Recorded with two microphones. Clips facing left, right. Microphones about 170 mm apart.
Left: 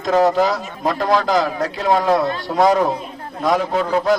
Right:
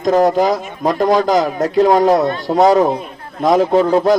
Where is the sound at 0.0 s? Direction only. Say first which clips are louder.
Right 3 dB; 45° right (ahead or behind).